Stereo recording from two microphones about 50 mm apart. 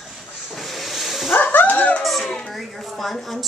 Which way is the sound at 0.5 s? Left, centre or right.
Centre.